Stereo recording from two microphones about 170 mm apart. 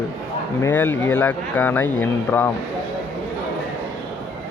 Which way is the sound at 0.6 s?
10° left (ahead or behind).